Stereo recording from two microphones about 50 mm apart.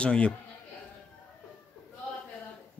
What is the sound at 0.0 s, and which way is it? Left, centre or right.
Speech, left.